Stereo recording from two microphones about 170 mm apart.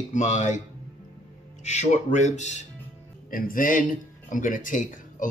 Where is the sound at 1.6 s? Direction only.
45° left (ahead or behind).